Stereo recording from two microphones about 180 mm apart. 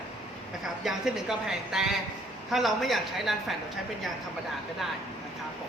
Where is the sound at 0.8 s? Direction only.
5° right (ahead or behind).